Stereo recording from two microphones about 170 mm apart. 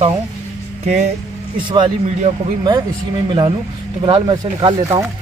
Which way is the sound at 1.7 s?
30° right (ahead or behind).